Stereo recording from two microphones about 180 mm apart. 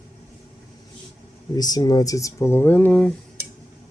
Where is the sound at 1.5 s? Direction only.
20° left (ahead or behind).